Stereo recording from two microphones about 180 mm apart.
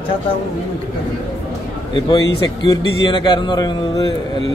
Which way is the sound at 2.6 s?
25° left (ahead or behind).